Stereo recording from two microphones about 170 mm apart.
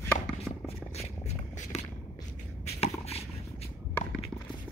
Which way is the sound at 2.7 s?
35° left (ahead or behind).